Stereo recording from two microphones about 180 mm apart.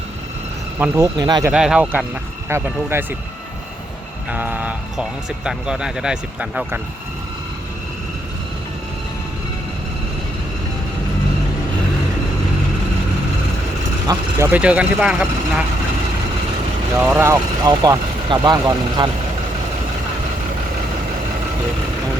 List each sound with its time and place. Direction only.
0.8 s speech: 15° right (ahead or behind)
1.5 s speech: 5° right (ahead or behind)
4.3 s speech: 10° right (ahead or behind)
14.1 s speech: 15° right (ahead or behind)
17.0 s speech: 10° right (ahead or behind)